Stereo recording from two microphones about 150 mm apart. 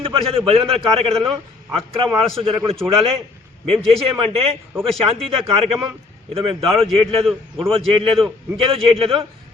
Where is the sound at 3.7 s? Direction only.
40° right (ahead or behind).